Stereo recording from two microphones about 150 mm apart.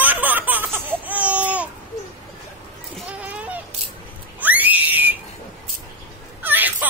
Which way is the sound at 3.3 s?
10° right (ahead or behind).